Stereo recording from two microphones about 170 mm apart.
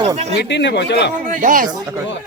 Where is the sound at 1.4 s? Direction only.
50° right (ahead or behind).